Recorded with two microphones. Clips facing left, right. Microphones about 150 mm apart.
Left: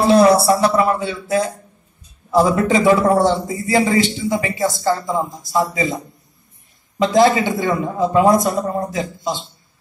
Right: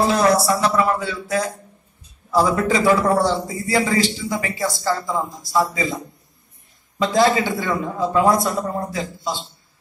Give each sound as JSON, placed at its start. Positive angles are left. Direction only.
{"t": 0.0, "sound": "a sound", "side_deg": 30}
{"t": 2.3, "sound": "speech", "side_deg": 20}
{"t": 7.0, "sound": "speech", "side_deg": 20}